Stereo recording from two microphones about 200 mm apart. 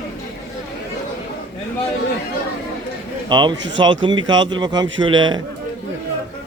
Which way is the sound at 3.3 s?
20° right (ahead or behind).